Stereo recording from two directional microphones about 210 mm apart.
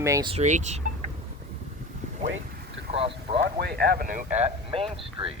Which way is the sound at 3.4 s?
50° right (ahead or behind).